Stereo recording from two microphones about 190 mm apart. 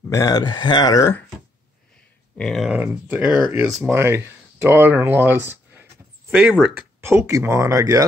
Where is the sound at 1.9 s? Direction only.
5° left (ahead or behind); by 8.1 s 20° right (ahead or behind).